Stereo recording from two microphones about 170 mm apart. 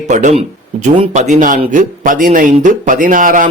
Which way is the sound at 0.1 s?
45° right (ahead or behind).